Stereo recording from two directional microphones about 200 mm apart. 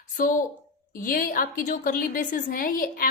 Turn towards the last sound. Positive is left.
turn(degrees=45)  # may be behind; listen again after turning